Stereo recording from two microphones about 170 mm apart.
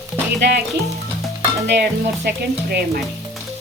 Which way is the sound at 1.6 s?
75° right (ahead or behind).